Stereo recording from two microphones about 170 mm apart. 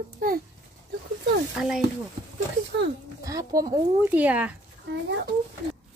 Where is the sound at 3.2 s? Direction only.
20° right (ahead or behind).